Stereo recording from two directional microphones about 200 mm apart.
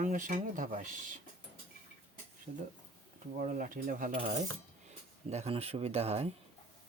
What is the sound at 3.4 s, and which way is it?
Speech, 40° right (ahead or behind).